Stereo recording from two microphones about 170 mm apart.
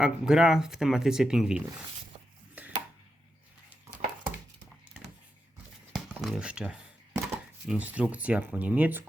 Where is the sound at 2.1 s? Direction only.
30° right (ahead or behind).